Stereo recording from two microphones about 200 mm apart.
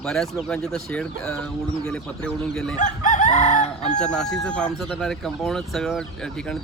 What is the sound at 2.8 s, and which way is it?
Chicken, 40° left (ahead or behind).